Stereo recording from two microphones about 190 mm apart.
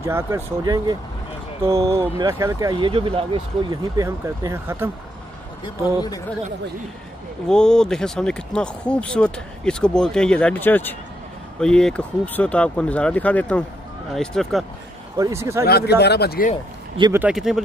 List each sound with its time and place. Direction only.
0.0 s speech: 15° right (ahead or behind)
3.7 s speech: 20° right (ahead or behind)
7.4 s speech: 5° left (ahead or behind)
15.1 s speech: 15° right (ahead or behind)
15.6 s speech: 60° left (ahead or behind)
17.1 s speech: 5° right (ahead or behind)